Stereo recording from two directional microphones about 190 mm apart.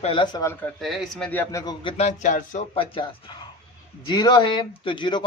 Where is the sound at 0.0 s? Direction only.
25° left (ahead or behind).